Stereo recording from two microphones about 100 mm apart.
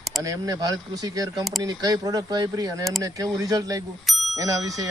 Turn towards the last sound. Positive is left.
turn(degrees=-35)  # may be behind; listen again after turning